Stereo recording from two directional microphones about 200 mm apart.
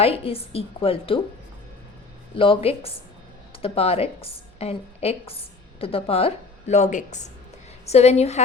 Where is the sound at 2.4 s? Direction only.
25° left (ahead or behind).